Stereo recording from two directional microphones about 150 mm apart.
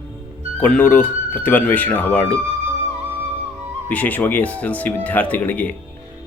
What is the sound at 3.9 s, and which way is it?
Speech, 10° left (ahead or behind).